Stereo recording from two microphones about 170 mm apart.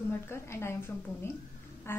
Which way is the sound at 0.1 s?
15° left (ahead or behind).